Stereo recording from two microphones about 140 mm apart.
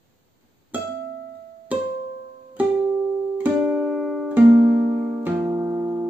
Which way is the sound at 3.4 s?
10° right (ahead or behind).